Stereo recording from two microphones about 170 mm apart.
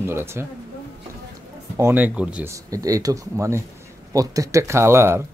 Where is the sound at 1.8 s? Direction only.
10° right (ahead or behind).